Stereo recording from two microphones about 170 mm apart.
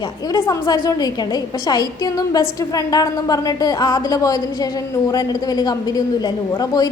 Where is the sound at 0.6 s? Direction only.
25° left (ahead or behind).